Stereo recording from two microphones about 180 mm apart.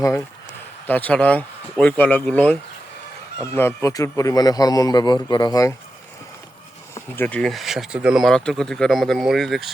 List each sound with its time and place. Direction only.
0.0 s speech: 15° left (ahead or behind)
6.9 s speech: 10° left (ahead or behind)